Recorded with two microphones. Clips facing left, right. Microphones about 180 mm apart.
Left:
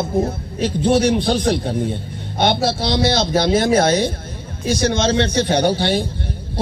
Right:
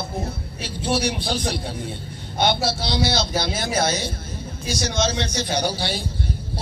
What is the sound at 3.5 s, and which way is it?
A man's voice, 55° left (ahead or behind).